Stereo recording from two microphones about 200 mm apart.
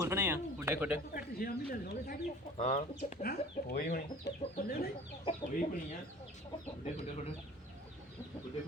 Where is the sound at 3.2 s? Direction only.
50° left (ahead or behind).